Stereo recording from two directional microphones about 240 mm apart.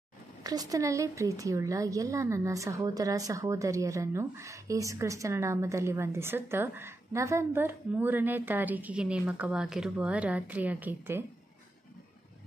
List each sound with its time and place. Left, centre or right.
0.4 s speech: centre